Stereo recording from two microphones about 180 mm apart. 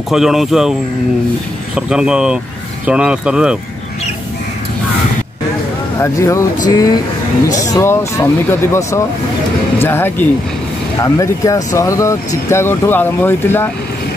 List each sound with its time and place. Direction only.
0.1 s speech: centre (ahead or behind)
1.8 s speech: 5° right (ahead or behind)
5.9 s speech: 15° left (ahead or behind)